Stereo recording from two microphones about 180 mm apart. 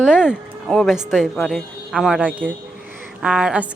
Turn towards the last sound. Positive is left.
turn(degrees=-5)  # may be behind; listen again after turning